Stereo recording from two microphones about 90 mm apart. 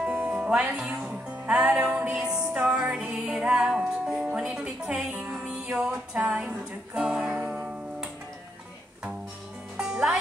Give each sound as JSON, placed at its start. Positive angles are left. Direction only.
{"t": 0.0, "sound": "music", "side_deg": -15}
{"t": 9.8, "sound": "music", "side_deg": -5}